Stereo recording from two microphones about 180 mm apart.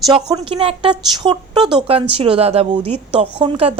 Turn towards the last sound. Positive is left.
turn(degrees=-30)  # may be behind; listen again after turning